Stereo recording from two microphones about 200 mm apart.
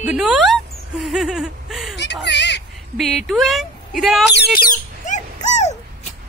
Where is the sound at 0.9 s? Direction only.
Centre (ahead or behind).